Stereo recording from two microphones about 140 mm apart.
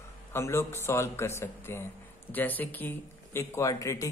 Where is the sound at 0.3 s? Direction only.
20° left (ahead or behind).